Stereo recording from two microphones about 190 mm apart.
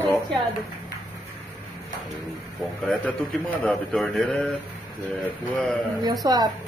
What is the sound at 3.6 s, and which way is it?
Speech, 5° left (ahead or behind).